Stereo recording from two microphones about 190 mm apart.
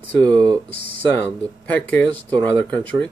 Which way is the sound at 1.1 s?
10° left (ahead or behind).